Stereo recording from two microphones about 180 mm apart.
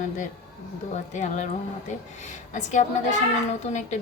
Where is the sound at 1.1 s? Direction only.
40° left (ahead or behind).